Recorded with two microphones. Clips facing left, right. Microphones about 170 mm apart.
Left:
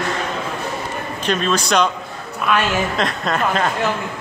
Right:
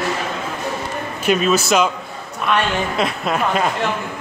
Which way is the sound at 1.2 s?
5° right (ahead or behind).